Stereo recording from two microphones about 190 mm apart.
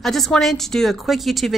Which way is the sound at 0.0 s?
Centre (ahead or behind).